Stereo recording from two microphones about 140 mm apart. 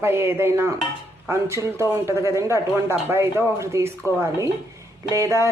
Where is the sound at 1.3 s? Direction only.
20° right (ahead or behind).